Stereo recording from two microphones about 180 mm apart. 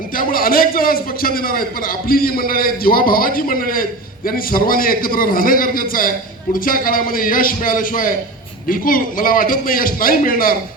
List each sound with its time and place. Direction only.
0.2 s a man's voice: 50° left (ahead or behind)